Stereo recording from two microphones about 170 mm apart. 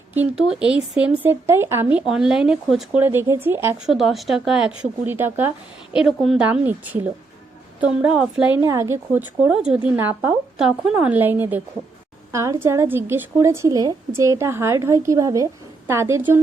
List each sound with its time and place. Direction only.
0.1 s a woman's voice: 5° right (ahead or behind)
3.8 s a woman's voice: centre (ahead or behind)